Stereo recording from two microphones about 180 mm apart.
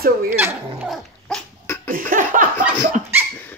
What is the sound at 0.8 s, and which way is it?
Dog, centre (ahead or behind).